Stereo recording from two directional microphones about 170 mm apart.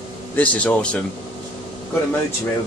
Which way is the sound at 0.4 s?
5° left (ahead or behind).